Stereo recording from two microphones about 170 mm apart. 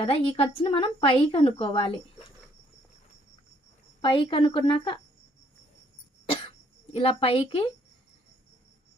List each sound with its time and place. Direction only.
0.0 s speech: 30° left (ahead or behind)
4.0 s a woman's voice: 30° left (ahead or behind)
6.9 s speech: 35° left (ahead or behind)